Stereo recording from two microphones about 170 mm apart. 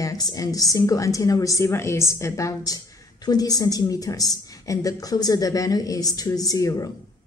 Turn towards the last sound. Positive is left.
turn(degrees=20)  # may be behind; listen again after turning